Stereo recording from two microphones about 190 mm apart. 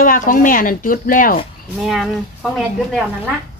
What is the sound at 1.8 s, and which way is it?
Speech, centre (ahead or behind).